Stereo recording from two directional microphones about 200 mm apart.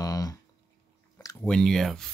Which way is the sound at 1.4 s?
5° left (ahead or behind).